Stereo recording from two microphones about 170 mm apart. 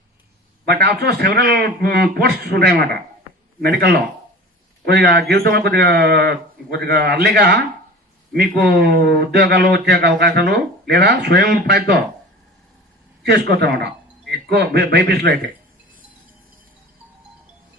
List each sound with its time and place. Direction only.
0.7 s speech: 75° right (ahead or behind)
8.3 s speech: 70° right (ahead or behind)
13.2 s speech: 75° right (ahead or behind)